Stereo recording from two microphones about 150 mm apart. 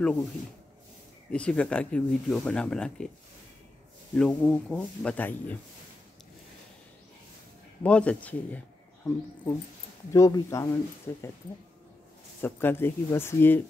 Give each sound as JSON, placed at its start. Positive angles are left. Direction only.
{"t": 1.3, "sound": "speech", "side_deg": 5}
{"t": 4.2, "sound": "speech", "side_deg": 5}
{"t": 7.8, "sound": "speech", "side_deg": 10}
{"t": 12.4, "sound": "speech", "side_deg": 15}